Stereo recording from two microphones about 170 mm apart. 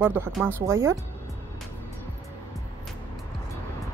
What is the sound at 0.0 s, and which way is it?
Speech, 10° right (ahead or behind).